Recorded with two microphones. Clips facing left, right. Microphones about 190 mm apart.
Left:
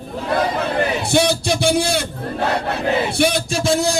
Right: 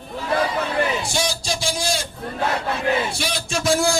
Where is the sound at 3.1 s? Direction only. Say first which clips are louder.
Left 9 dB; 55° left (ahead or behind).